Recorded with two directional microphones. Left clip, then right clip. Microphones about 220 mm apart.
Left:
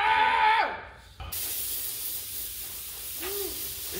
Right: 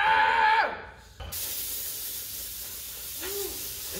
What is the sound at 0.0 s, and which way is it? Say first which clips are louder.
Screaming: right 1 dB; 10° right (ahead or behind).